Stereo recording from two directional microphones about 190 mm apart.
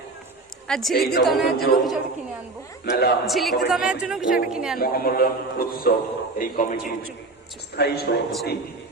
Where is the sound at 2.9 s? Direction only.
55° left (ahead or behind).